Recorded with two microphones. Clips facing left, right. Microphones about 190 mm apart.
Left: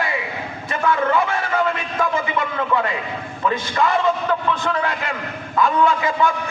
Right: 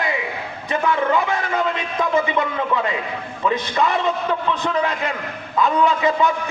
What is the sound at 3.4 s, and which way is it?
A man's voice, 20° right (ahead or behind).